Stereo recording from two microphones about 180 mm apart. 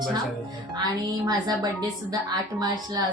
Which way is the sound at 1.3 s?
20° right (ahead or behind).